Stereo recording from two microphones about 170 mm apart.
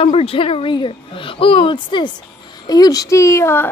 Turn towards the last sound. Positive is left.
turn(degrees=15)  # may be behind; listen again after turning